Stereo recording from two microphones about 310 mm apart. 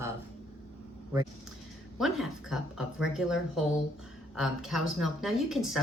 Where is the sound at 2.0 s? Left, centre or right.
Centre.